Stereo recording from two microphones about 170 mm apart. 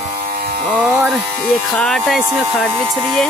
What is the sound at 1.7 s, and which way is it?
Speech, 5° left (ahead or behind).